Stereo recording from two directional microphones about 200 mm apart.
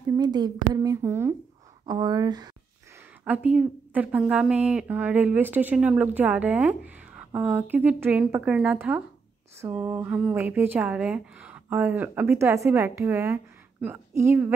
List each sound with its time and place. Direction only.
0.2 s speech: 20° right (ahead or behind)
3.3 s speech: 5° right (ahead or behind)